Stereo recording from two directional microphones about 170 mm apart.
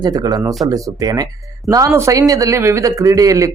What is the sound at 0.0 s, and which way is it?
Speech, 20° right (ahead or behind).